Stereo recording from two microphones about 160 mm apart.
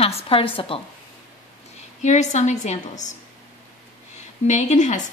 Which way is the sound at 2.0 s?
45° left (ahead or behind).